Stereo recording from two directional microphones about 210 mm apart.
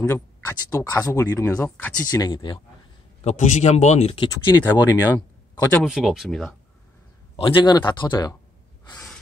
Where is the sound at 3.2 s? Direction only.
35° left (ahead or behind).